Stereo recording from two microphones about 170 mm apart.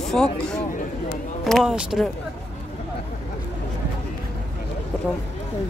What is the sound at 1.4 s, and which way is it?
Speech, centre (ahead or behind).